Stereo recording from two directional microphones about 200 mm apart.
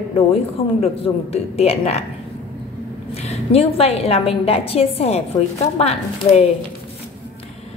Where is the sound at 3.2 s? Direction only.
30° left (ahead or behind).